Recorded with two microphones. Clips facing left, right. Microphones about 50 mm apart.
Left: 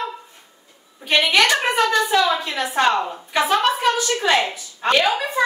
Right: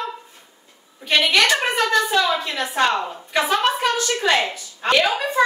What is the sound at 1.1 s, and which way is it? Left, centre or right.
Speech, centre.